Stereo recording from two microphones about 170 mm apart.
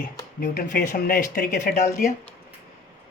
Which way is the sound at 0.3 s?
60° left (ahead or behind).